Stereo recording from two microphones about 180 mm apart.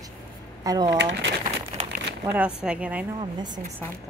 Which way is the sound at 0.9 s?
80° right.